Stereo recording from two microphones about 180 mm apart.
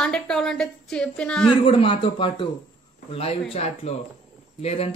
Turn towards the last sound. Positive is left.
turn(degrees=35)  # may be behind; listen again after turning